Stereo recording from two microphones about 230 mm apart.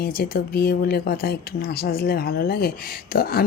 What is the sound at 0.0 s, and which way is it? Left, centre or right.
Speech, left.